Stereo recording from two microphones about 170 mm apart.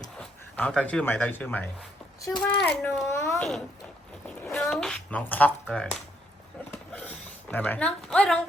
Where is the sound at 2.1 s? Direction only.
25° left (ahead or behind).